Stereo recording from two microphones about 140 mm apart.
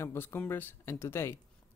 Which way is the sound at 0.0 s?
15° left (ahead or behind).